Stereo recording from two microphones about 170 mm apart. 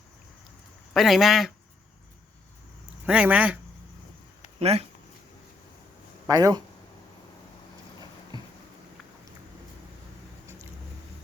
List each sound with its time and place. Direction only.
0.9 s speech: centre (ahead or behind)
3.1 s speech: 10° right (ahead or behind)
4.6 s speech: 35° right (ahead or behind)
6.2 s speech: 20° right (ahead or behind)
8.3 s a sound: 25° right (ahead or behind)